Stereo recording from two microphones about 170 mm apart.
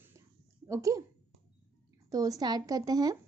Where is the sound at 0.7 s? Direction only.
20° right (ahead or behind).